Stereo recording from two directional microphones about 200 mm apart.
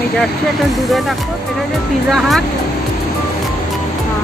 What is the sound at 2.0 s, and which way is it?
Speech, centre (ahead or behind).